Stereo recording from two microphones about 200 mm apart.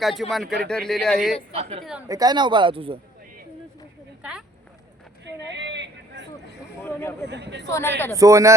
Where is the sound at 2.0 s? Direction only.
20° right (ahead or behind).